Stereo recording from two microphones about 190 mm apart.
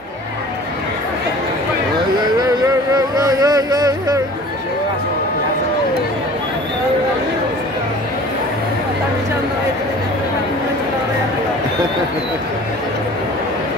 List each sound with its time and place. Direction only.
2.9 s music: 20° right (ahead or behind)